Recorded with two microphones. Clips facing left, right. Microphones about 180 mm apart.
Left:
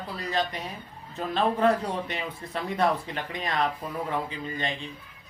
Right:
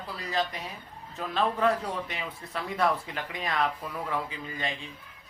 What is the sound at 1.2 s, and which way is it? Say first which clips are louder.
A man's voice: left 3 dB; 35° left (ahead or behind).